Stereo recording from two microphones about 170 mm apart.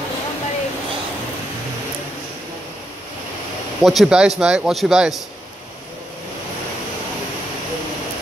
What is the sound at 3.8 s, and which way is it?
Speech, centre (ahead or behind).